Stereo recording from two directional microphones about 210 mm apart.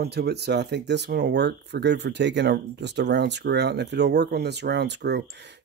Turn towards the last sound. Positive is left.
turn(degrees=-55)  # may be behind; listen again after turning